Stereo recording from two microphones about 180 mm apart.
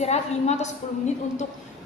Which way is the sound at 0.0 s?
40° left (ahead or behind).